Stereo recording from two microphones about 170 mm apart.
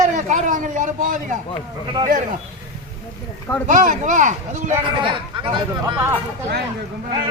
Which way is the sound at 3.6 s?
50° right (ahead or behind).